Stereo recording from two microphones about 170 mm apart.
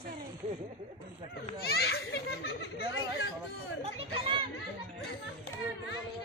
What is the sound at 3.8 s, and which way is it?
Chatter, 35° right (ahead or behind).